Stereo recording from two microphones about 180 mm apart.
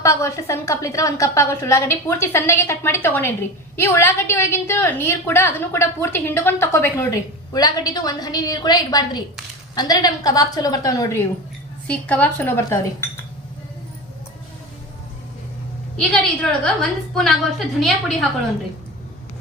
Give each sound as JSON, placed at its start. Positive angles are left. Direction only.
{"t": 0.0, "sound": "a woman's voice", "side_deg": 15}
{"t": 11.9, "sound": "a woman's voice", "side_deg": 10}
{"t": 16.0, "sound": "a woman's voice", "side_deg": 5}